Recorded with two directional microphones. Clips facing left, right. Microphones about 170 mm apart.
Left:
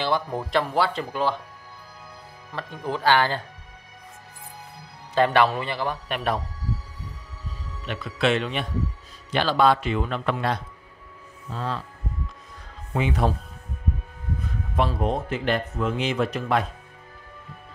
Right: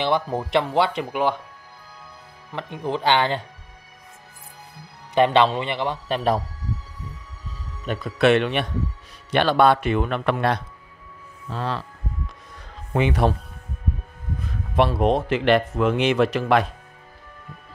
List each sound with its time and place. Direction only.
0.0 s speech: 20° right (ahead or behind)
2.5 s speech: 20° right (ahead or behind)
5.1 s speech: 20° right (ahead or behind)
7.8 s speech: 45° right (ahead or behind); by 11.8 s 70° right (ahead or behind)
12.9 s speech: 70° right (ahead or behind)
14.8 s speech: 75° right (ahead or behind)